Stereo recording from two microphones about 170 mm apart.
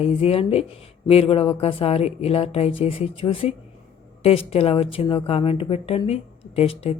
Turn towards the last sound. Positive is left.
turn(degrees=35)  # may be behind; listen again after turning